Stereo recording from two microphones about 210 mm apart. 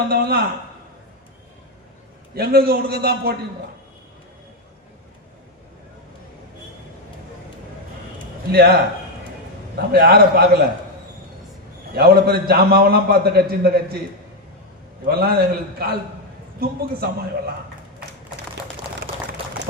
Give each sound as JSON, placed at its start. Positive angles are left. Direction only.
{"t": 0.1, "sound": "a man's voice", "side_deg": -45}
{"t": 2.3, "sound": "a man's voice", "side_deg": -45}
{"t": 8.5, "sound": "a man's voice", "side_deg": -50}
{"t": 9.9, "sound": "a man's voice", "side_deg": -50}
{"t": 11.9, "sound": "a man's voice", "side_deg": -50}
{"t": 15.0, "sound": "a man's voice", "side_deg": -45}